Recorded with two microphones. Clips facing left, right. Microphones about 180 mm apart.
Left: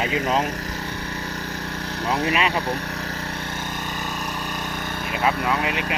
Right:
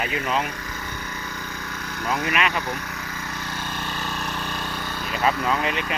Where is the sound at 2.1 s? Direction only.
30° left (ahead or behind).